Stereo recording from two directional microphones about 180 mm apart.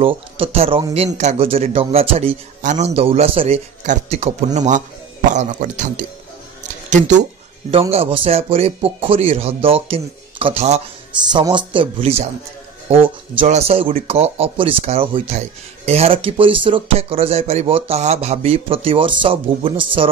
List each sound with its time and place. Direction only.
0.0 s speech: 30° right (ahead or behind)
7.9 s speech: 30° right (ahead or behind)
11.2 s speech: 25° right (ahead or behind)